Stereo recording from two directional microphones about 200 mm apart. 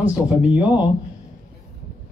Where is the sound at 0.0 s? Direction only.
5° right (ahead or behind).